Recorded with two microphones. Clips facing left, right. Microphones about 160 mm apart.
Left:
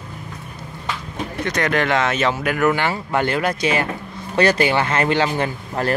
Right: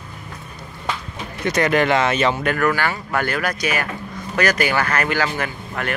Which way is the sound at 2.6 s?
20° left (ahead or behind).